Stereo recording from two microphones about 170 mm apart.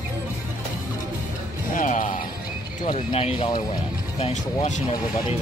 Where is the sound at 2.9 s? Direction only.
35° left (ahead or behind).